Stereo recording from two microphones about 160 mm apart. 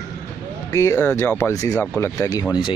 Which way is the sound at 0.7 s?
20° left (ahead or behind).